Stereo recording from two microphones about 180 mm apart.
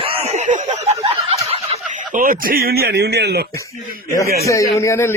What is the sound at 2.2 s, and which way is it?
Speech, 50° right (ahead or behind).